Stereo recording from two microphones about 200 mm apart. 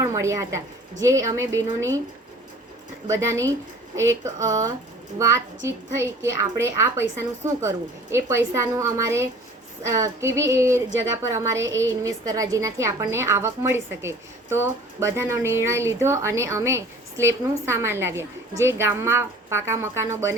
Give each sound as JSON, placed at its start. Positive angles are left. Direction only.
{"t": 0.0, "sound": "a woman's voice", "side_deg": -15}
{"t": 3.1, "sound": "a woman's voice", "side_deg": -15}